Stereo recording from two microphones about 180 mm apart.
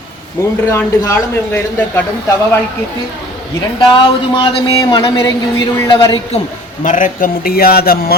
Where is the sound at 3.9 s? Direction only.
25° left (ahead or behind).